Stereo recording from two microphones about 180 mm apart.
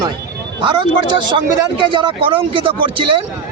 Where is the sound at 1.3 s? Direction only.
25° right (ahead or behind).